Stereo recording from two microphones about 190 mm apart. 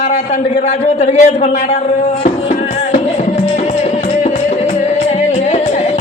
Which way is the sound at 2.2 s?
40° left (ahead or behind).